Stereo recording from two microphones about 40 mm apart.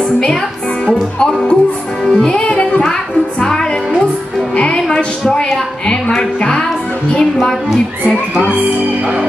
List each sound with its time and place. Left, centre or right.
0.8 s music: left
2.4 s music: left
3.3 s music: centre
4.7 s a woman's voice: centre
6.1 s music: centre